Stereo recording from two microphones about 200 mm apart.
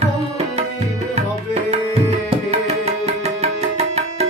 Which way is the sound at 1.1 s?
30° right (ahead or behind).